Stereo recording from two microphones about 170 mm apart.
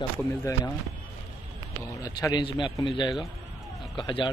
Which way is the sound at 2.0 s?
20° left (ahead or behind).